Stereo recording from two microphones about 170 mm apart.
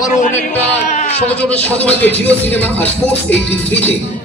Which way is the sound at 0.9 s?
40° left (ahead or behind).